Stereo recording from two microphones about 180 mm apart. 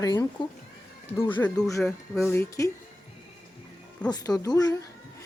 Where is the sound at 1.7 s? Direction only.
15° left (ahead or behind).